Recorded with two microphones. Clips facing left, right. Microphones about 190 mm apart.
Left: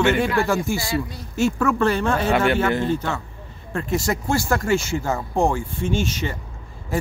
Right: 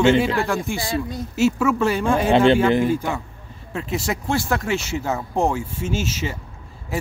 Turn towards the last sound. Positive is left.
turn(degrees=-5)  # may be behind; listen again after turning